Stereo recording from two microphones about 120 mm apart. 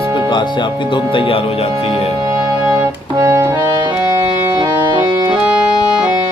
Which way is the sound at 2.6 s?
25° right (ahead or behind).